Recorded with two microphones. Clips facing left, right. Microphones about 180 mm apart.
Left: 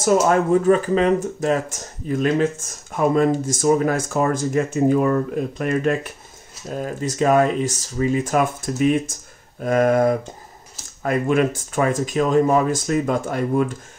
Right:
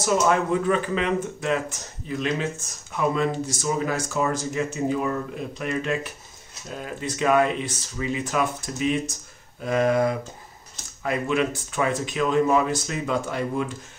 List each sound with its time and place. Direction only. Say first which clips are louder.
0.0 s speech: left 5 dB; 45° left (ahead or behind)